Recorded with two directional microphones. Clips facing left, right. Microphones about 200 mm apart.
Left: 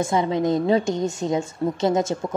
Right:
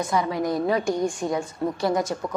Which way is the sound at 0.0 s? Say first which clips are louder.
Left 3 dB; 25° left (ahead or behind).